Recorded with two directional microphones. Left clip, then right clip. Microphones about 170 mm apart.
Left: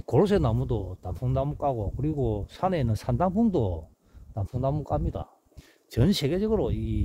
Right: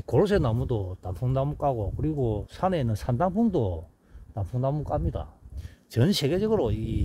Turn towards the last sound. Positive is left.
turn(degrees=5)  # may be behind; listen again after turning